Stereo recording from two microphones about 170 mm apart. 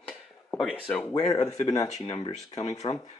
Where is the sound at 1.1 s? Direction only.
25° left (ahead or behind).